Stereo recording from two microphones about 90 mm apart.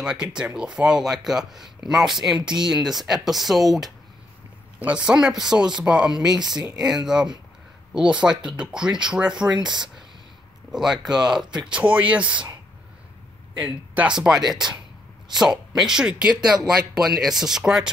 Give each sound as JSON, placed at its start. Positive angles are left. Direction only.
{"t": 0.0, "sound": "speech", "side_deg": -10}
{"t": 4.7, "sound": "speech", "side_deg": -15}
{"t": 7.9, "sound": "speech", "side_deg": -10}
{"t": 9.6, "sound": "speech", "side_deg": -55}
{"t": 10.7, "sound": "speech", "side_deg": -5}
{"t": 13.6, "sound": "speech", "side_deg": -10}
{"t": 15.7, "sound": "speech", "side_deg": -5}